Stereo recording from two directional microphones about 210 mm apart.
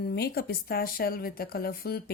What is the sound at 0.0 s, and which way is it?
Speech, 50° left (ahead or behind).